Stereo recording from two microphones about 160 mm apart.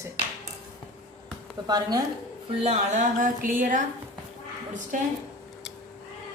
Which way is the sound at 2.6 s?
50° right (ahead or behind).